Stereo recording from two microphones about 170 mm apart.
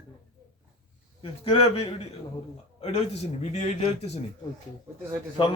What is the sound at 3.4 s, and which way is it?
Speech, 40° left (ahead or behind).